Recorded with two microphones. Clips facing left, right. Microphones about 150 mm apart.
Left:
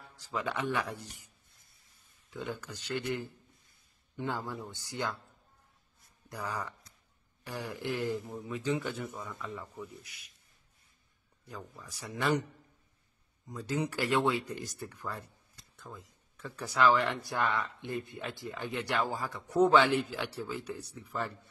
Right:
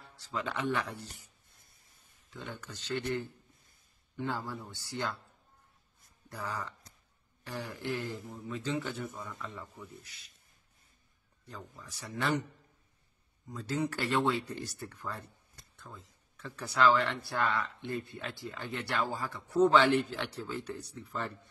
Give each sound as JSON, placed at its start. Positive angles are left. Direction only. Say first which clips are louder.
{"t": 0.1, "sound": "speech", "louder": "left 1 dB", "side_deg": 15}
{"t": 2.3, "sound": "speech", "louder": "left 5 dB", "side_deg": 10}
{"t": 6.2, "sound": "speech", "louder": "left 1 dB", "side_deg": 15}
{"t": 9.3, "sound": "speech", "louder": "left 2 dB", "side_deg": 0}
{"t": 11.4, "sound": "speech", "louder": "left 2 dB", "side_deg": 10}
{"t": 13.5, "sound": "speech", "louder": "even", "side_deg": 15}